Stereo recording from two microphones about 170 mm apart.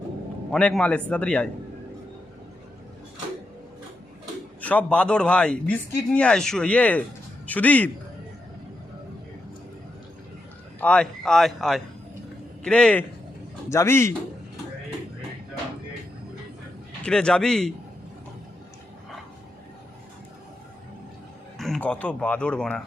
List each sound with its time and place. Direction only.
0.5 s a man's voice: 5° left (ahead or behind)
4.6 s a man's voice: 10° left (ahead or behind)
10.8 s a man's voice: 5° left (ahead or behind)
17.0 s speech: 5° left (ahead or behind)
21.6 s speech: 5° left (ahead or behind)